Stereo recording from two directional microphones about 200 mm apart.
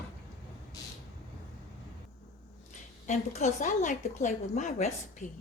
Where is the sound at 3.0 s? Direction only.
35° left (ahead or behind).